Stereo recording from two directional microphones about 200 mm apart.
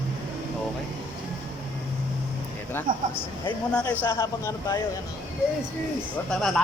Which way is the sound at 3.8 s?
10° left (ahead or behind).